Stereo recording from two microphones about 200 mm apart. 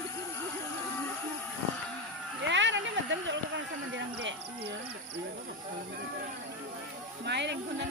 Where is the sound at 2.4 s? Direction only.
65° right (ahead or behind).